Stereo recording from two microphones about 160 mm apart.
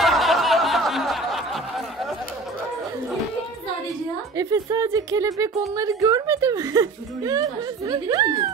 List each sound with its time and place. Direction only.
0.0 s snicker: centre (ahead or behind)
4.4 s speech: 20° right (ahead or behind)